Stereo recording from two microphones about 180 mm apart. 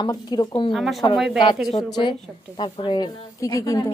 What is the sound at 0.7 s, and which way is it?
Speech, centre (ahead or behind).